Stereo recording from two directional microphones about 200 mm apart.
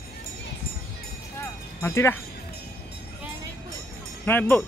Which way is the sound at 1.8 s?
15° left (ahead or behind).